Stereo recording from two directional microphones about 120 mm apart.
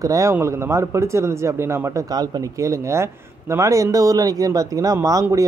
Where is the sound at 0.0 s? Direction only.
25° right (ahead or behind).